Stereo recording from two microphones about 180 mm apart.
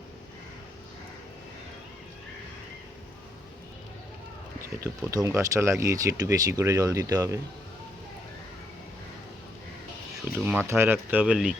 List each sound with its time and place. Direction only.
4.8 s speech: 15° right (ahead or behind)
10.3 s a sound: 10° right (ahead or behind)
10.7 s speech: 10° right (ahead or behind)